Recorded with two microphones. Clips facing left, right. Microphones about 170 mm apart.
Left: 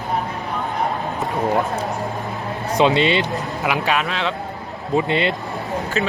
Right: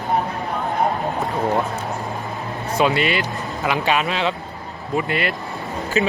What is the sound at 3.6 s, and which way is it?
Speech, 5° left (ahead or behind).